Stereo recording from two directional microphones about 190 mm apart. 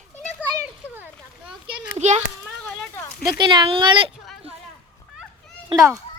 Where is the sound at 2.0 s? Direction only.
35° right (ahead or behind).